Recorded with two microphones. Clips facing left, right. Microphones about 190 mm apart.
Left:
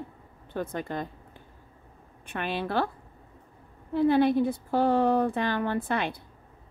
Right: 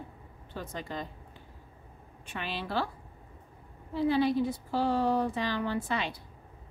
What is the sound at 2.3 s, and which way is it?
Speech, 55° left (ahead or behind).